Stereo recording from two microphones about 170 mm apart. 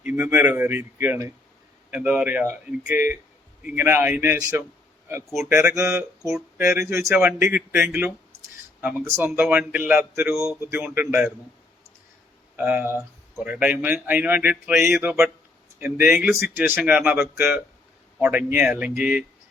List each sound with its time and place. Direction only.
0.0 s speech: 10° right (ahead or behind)
12.5 s speech: 10° right (ahead or behind)